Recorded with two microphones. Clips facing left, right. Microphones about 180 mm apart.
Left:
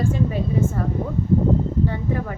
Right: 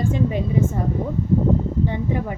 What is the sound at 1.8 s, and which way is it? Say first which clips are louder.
Speech: right 1 dB; 15° right (ahead or behind).